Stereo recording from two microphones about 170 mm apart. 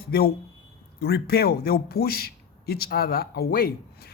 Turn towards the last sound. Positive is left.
turn(degrees=60)  # may be behind; listen again after turning